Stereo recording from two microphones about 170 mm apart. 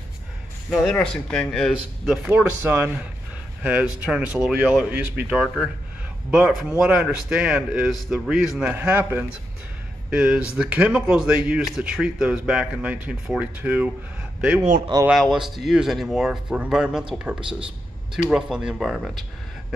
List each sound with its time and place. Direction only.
0.7 s a man's voice: centre (ahead or behind)
2.2 s a man's voice: 10° right (ahead or behind)
15.0 s a man's voice: centre (ahead or behind)